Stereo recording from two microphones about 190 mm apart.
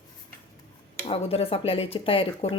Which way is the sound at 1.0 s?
30° left (ahead or behind).